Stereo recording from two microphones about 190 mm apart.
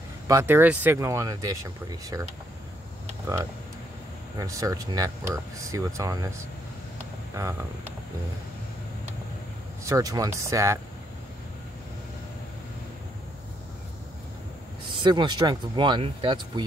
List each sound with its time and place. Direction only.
0.3 s speech: 15° right (ahead or behind)
3.3 s speech: 20° right (ahead or behind)
9.8 s speech: 20° right (ahead or behind)
15.0 s speech: 25° right (ahead or behind)